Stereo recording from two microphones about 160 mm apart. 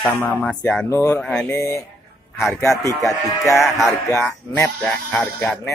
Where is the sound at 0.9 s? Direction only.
20° left (ahead or behind).